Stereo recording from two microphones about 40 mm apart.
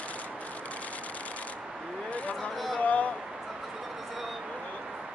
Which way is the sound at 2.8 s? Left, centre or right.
Left.